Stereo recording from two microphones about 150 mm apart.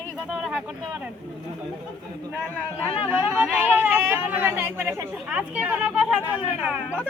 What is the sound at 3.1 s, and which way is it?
Speech, 10° right (ahead or behind).